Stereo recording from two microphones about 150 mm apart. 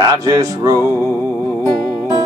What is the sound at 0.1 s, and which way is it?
Music, 25° right (ahead or behind).